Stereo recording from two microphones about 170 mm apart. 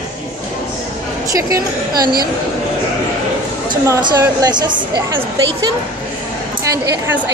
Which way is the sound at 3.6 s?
25° right (ahead or behind).